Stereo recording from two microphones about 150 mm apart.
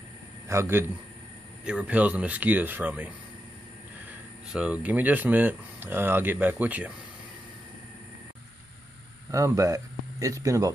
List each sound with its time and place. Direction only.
0.5 s speech: 15° right (ahead or behind)
4.5 s speech: 5° right (ahead or behind)
9.3 s speech: 20° right (ahead or behind)